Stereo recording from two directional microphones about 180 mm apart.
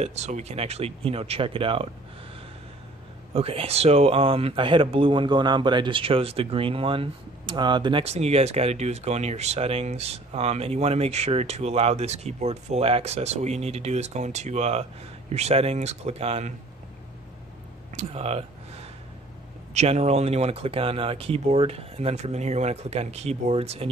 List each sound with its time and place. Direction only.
0.0 s speech: 40° right (ahead or behind)
3.3 s speech: 30° right (ahead or behind)
17.9 s a sound: 35° right (ahead or behind)
19.7 s speech: 40° right (ahead or behind)